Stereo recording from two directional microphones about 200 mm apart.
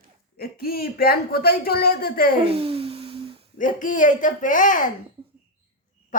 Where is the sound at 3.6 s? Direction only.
40° left (ahead or behind).